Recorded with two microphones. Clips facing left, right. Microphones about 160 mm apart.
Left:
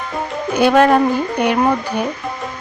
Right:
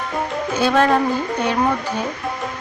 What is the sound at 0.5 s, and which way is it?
A woman's voice, 15° left (ahead or behind).